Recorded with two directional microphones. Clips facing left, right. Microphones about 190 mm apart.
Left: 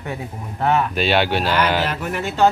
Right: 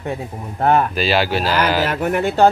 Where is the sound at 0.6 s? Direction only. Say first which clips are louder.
Right 3 dB; 45° right (ahead or behind).